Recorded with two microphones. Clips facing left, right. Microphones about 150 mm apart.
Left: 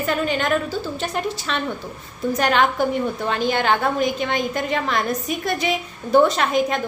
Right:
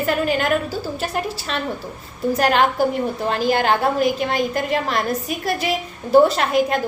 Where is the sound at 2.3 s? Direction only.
35° right (ahead or behind).